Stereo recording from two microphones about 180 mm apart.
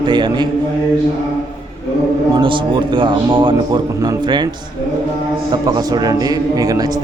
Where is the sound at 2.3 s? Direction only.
25° right (ahead or behind).